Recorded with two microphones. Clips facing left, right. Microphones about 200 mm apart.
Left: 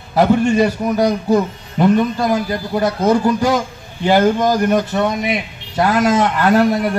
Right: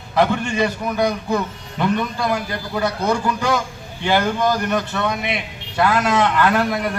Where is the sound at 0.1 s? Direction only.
40° left (ahead or behind).